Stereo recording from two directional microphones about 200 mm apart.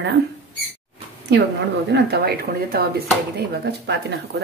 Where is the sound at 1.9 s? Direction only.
50° right (ahead or behind).